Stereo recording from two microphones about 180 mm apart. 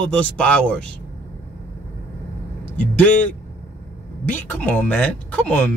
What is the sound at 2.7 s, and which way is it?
Speech, 10° left (ahead or behind).